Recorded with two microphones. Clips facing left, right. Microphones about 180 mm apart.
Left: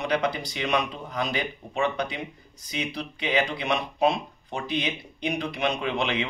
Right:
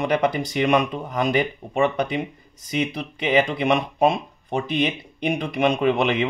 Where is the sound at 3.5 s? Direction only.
50° right (ahead or behind).